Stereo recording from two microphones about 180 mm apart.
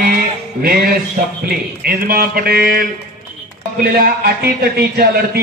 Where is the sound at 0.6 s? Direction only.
55° right (ahead or behind).